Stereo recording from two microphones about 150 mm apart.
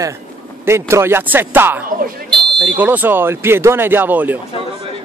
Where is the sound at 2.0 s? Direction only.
90° right.